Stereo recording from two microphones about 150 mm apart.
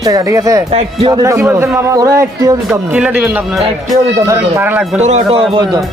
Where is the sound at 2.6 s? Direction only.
10° right (ahead or behind).